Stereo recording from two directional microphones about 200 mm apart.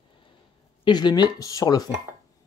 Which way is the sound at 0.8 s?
20° left (ahead or behind).